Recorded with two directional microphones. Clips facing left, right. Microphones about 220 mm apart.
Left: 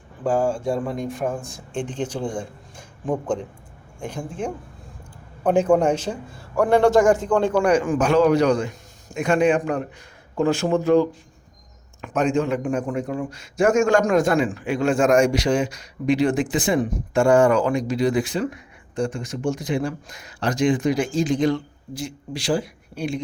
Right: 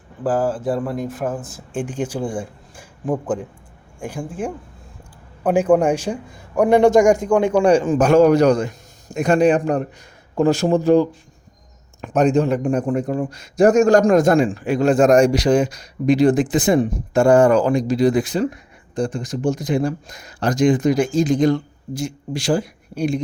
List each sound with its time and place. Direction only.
0.3 s a man's voice: 5° right (ahead or behind)
7.6 s speech: 30° right (ahead or behind)
12.0 s speech: 40° right (ahead or behind)